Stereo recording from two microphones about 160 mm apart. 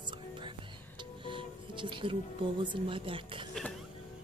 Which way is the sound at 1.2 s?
30° right (ahead or behind).